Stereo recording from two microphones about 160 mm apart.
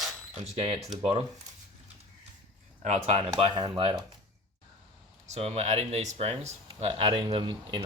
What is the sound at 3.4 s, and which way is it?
Speech, 30° right (ahead or behind).